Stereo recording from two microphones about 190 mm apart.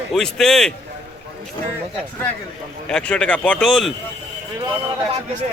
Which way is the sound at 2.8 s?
5° left (ahead or behind).